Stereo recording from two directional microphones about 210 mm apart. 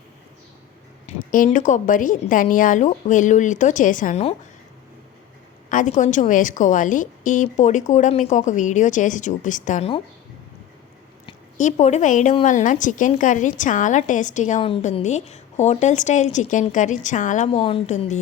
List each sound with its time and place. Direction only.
1.0 s a woman's voice: 35° left (ahead or behind)
5.6 s a woman's voice: 35° left (ahead or behind)
11.5 s a woman's voice: 35° left (ahead or behind)